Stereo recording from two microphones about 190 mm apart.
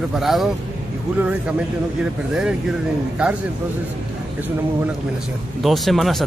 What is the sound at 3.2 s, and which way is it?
Speech, 5° right (ahead or behind).